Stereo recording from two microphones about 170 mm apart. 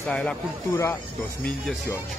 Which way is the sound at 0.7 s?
15° left (ahead or behind).